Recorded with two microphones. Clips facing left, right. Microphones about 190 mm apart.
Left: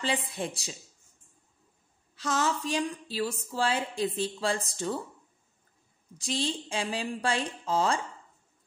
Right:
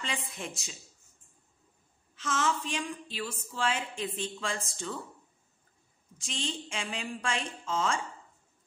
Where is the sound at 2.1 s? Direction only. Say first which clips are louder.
Left 2 dB; 35° left (ahead or behind).